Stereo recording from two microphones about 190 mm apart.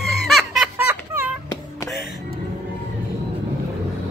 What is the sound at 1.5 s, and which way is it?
Music, 20° left (ahead or behind).